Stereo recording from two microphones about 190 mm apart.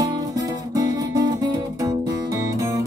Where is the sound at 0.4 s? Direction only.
20° right (ahead or behind).